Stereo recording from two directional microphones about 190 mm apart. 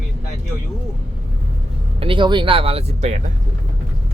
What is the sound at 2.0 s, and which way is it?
Speech, 25° right (ahead or behind).